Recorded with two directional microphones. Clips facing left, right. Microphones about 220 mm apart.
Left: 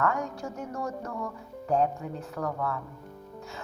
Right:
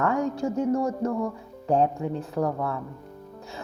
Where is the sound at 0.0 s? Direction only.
30° right (ahead or behind).